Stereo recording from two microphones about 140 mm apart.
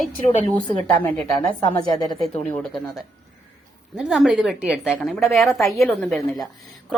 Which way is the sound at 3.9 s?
5° right (ahead or behind).